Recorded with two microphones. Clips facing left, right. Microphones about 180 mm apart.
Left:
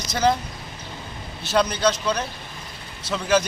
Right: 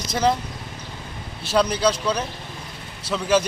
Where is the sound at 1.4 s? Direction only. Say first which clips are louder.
Right 1 dB; 30° right (ahead or behind).